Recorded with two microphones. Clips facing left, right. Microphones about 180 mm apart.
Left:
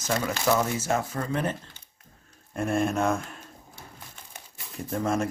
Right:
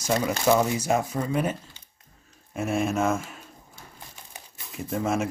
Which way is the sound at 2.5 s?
5° right (ahead or behind).